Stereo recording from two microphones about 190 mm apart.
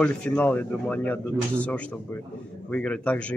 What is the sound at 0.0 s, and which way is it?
A man's voice, 10° left (ahead or behind).